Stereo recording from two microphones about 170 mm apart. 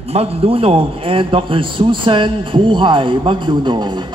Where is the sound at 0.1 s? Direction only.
35° right (ahead or behind).